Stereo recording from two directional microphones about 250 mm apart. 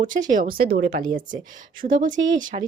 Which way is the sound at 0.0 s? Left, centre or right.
Right.